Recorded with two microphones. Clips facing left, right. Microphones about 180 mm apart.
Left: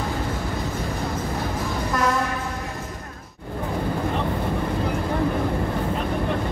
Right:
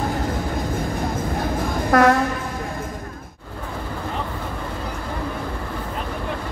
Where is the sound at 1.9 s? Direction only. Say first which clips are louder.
Right 9 dB; 65° right (ahead or behind).